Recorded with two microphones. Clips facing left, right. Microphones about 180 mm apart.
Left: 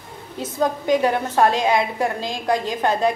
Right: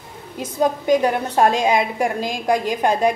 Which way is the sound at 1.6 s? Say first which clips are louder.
Right 1 dB; 15° right (ahead or behind).